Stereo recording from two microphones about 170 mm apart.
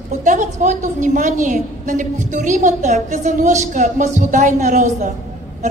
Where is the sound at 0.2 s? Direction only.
50° right (ahead or behind).